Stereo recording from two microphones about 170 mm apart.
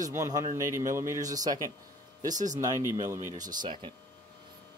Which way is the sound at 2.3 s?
45° right (ahead or behind).